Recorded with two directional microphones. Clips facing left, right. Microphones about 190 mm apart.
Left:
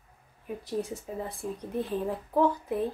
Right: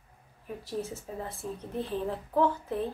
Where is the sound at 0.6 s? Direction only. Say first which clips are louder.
Left 3 dB; 15° left (ahead or behind).